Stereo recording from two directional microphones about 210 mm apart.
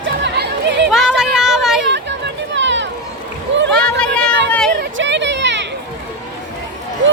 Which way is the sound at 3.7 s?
5° left (ahead or behind).